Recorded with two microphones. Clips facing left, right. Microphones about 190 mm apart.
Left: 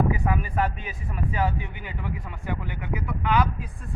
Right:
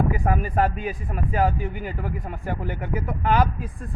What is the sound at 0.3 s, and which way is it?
Speech, 45° right (ahead or behind).